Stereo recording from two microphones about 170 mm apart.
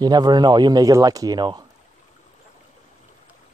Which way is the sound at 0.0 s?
25° right (ahead or behind).